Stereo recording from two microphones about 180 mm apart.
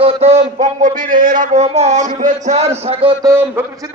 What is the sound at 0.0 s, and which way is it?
A man's voice, 35° right (ahead or behind).